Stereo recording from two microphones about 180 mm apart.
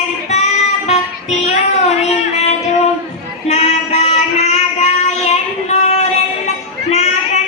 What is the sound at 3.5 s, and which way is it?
Music, 40° left (ahead or behind).